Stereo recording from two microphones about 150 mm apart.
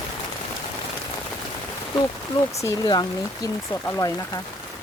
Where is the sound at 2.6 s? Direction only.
25° left (ahead or behind).